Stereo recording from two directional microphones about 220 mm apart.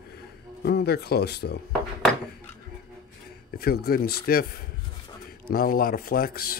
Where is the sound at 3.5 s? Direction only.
45° left (ahead or behind).